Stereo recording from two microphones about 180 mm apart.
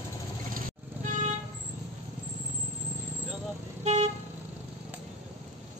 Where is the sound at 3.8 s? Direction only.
35° right (ahead or behind).